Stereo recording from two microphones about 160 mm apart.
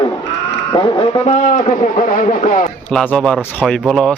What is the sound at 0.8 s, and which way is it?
A man's voice, 35° left (ahead or behind).